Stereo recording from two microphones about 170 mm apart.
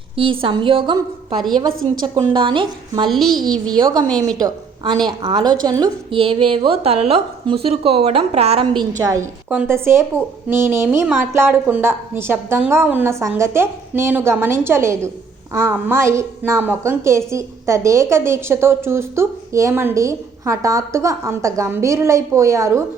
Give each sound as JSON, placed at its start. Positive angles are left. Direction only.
{"t": 0.2, "sound": "a woman's voice", "side_deg": -30}
{"t": 3.1, "sound": "a child's voice", "side_deg": 0}
{"t": 3.7, "sound": "a woman's voice", "side_deg": -25}
{"t": 9.5, "sound": "a woman's voice", "side_deg": -10}